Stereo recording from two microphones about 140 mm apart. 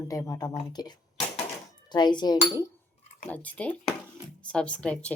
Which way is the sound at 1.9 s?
30° left (ahead or behind).